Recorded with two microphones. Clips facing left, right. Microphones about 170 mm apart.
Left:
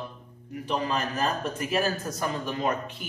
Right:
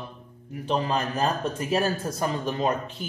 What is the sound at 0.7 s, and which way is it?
A man's voice, 30° right (ahead or behind).